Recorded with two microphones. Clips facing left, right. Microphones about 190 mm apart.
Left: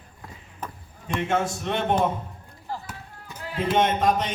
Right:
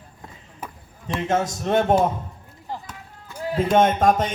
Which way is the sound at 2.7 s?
20° right (ahead or behind).